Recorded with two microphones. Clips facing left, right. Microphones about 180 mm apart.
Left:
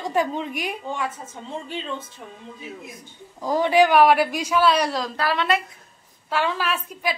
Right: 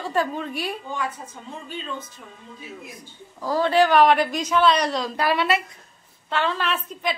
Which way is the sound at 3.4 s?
15° left (ahead or behind).